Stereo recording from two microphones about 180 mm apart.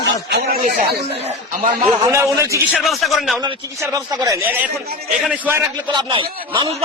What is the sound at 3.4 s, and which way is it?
Speech, 20° right (ahead or behind).